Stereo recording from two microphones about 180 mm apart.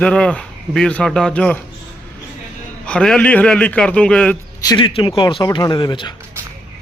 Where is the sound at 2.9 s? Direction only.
5° left (ahead or behind).